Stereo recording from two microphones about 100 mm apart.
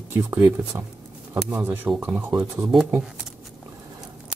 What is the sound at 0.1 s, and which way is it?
Speech, 25° right (ahead or behind).